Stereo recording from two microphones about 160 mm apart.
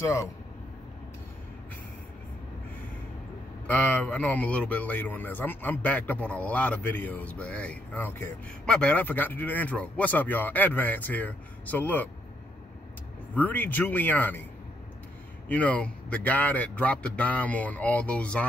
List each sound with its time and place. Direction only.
0.0 s speech: 20° left (ahead or behind)
3.6 s a man's voice: 10° left (ahead or behind)
13.3 s a man's voice: 10° left (ahead or behind)
15.4 s a man's voice: 10° left (ahead or behind)